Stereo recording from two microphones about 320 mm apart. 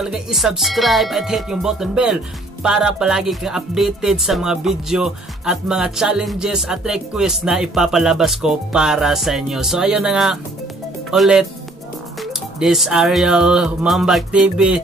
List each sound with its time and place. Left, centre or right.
0.0 s music: centre
11.1 s speech: centre
12.2 s music: centre